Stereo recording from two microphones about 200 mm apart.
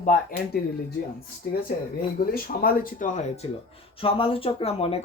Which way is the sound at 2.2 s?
50° left (ahead or behind).